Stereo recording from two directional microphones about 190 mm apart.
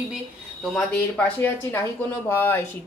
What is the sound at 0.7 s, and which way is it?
Speech, 5° left (ahead or behind).